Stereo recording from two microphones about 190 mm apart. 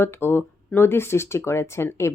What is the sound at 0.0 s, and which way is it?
A woman's voice, 10° left (ahead or behind).